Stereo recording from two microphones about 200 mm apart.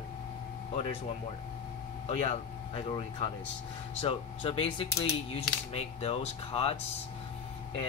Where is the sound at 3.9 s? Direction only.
30° left (ahead or behind).